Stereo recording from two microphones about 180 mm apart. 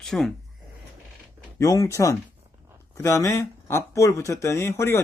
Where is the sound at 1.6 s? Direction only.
20° left (ahead or behind).